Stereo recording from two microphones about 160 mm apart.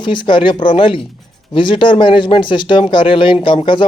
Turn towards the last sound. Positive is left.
turn(degrees=30)  # may be behind; listen again after turning